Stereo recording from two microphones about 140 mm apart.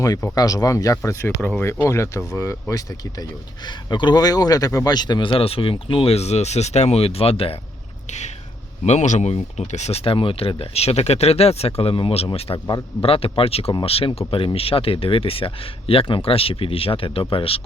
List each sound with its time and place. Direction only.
0.0 s speech: 25° left (ahead or behind); by 7.6 s 45° left (ahead or behind)
8.8 s speech: 55° left (ahead or behind)
12.6 s speech: 30° left (ahead or behind)
13.1 s speech: 45° left (ahead or behind)